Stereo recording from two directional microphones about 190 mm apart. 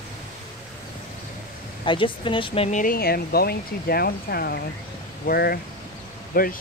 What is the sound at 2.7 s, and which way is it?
Speech, 45° left (ahead or behind).